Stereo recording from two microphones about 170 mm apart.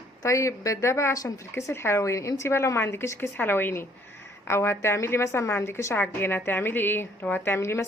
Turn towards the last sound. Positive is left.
turn(degrees=15)  # may be behind; listen again after turning